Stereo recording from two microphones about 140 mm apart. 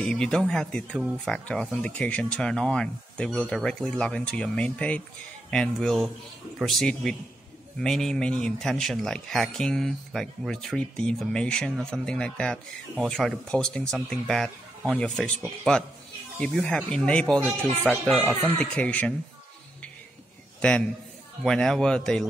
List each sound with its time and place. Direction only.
0.0 s speech: 5° left (ahead or behind)
17.4 s a man's voice: 10° right (ahead or behind)
18.6 s speech: 10° left (ahead or behind)
20.6 s speech: 5° left (ahead or behind)